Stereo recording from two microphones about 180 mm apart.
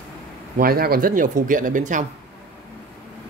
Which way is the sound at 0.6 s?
55° right (ahead or behind).